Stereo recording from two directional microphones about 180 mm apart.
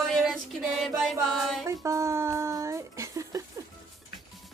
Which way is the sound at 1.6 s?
15° right (ahead or behind).